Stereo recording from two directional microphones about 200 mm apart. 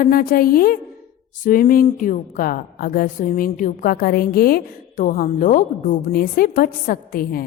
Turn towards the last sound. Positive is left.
turn(degrees=45)  # may be behind; listen again after turning